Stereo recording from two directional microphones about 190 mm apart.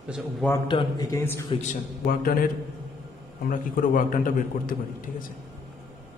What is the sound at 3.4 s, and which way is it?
A man's voice, 45° left (ahead or behind).